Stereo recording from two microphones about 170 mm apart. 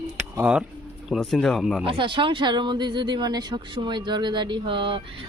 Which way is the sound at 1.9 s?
30° right (ahead or behind).